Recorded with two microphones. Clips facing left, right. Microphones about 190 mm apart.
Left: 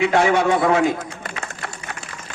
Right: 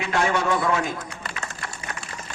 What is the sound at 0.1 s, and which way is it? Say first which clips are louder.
A man's voice: left 6 dB; 70° left (ahead or behind).